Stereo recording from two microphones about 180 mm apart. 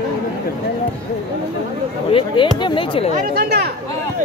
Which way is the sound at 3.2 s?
60° right (ahead or behind).